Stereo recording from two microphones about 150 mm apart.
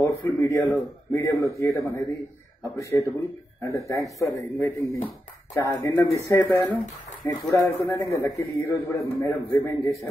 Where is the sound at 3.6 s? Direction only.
20° left (ahead or behind).